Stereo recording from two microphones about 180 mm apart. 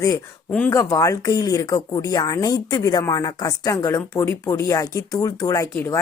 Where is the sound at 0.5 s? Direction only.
10° left (ahead or behind).